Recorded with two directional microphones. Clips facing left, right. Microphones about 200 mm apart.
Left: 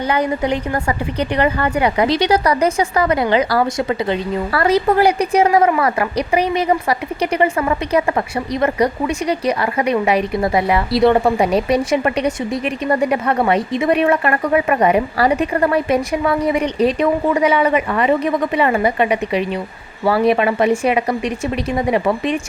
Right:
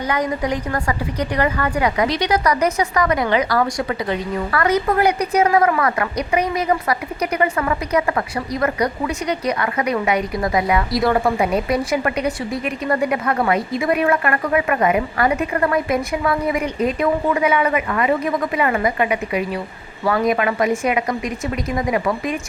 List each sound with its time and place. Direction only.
0.1 s speech: 30° left (ahead or behind)